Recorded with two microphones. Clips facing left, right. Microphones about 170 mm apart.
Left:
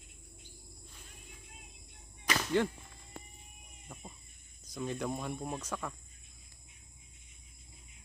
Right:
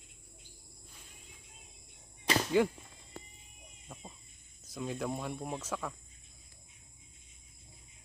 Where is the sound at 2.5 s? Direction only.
10° right (ahead or behind).